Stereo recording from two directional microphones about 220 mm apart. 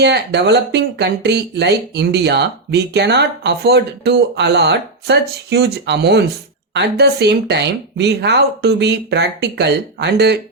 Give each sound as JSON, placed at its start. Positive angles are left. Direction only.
{"t": 0.0, "sound": "speech", "side_deg": -50}